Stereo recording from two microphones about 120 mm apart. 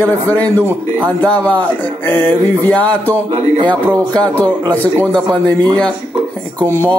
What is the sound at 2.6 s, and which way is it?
Speech, 10° left (ahead or behind).